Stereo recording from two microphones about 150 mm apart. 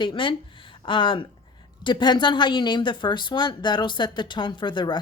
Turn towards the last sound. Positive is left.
turn(degrees=30)  # may be behind; listen again after turning